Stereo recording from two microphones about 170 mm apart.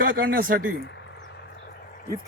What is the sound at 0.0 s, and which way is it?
Speech, 60° right (ahead or behind).